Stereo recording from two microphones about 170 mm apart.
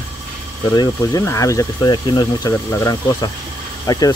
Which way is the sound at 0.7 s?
20° left (ahead or behind).